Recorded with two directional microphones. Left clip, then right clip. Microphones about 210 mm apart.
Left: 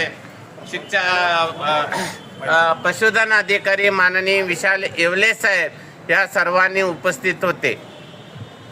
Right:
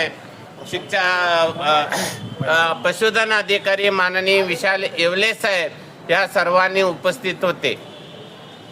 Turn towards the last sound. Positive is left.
turn(degrees=10)  # may be behind; listen again after turning